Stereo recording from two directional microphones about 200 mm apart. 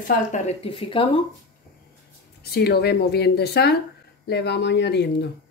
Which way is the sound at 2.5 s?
50° left (ahead or behind).